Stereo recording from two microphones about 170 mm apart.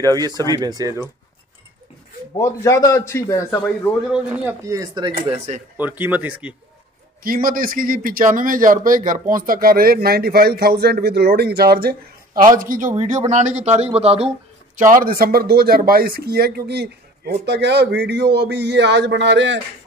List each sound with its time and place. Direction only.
0.0 s speech: 20° right (ahead or behind)
2.3 s a man's voice: 15° left (ahead or behind)
4.1 s speech: 10° right (ahead or behind)
5.8 s speech: 10° right (ahead or behind)
7.2 s speech: 55° right (ahead or behind)
12.5 s a man's voice: 55° right (ahead or behind); by 14.3 s 35° right (ahead or behind)
14.8 s speech: 50° right (ahead or behind); by 19.6 s 90° right